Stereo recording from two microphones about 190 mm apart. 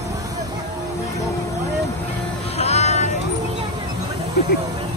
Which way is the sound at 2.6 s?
35° left (ahead or behind).